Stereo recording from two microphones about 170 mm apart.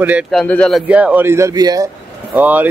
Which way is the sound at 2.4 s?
10° right (ahead or behind).